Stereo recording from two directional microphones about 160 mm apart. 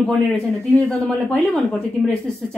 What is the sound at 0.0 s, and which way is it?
Speech, 5° left (ahead or behind).